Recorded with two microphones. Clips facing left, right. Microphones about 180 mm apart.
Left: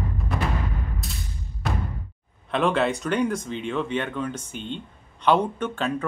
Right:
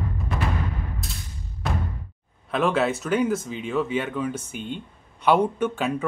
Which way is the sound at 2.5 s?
5° right (ahead or behind).